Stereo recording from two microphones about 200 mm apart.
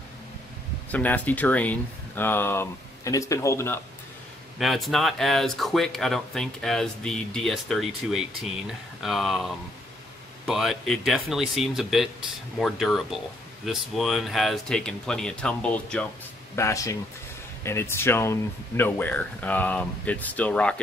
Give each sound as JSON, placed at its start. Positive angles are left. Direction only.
{"t": 0.9, "sound": "speech", "side_deg": 10}
{"t": 4.6, "sound": "speech", "side_deg": 0}